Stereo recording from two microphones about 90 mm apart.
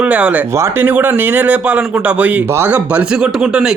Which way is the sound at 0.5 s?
35° right (ahead or behind).